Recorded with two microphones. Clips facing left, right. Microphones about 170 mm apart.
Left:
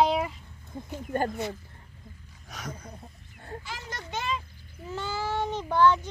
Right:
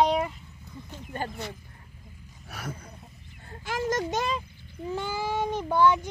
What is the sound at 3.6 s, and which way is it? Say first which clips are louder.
Speech: right 17 dB; 50° right (ahead or behind).